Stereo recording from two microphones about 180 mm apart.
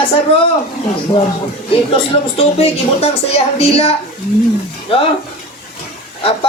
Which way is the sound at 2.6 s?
35° left (ahead or behind).